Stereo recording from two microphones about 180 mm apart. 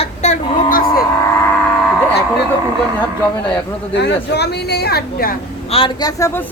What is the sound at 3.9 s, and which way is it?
Speech, 70° left (ahead or behind).